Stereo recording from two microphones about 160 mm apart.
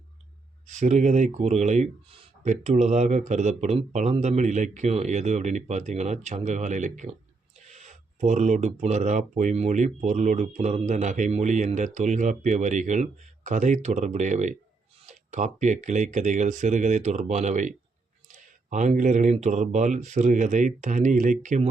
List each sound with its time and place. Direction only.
0.7 s speech: 50° right (ahead or behind)